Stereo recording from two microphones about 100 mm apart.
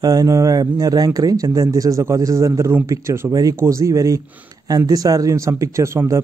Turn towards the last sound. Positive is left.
turn(degrees=-30)  # may be behind; listen again after turning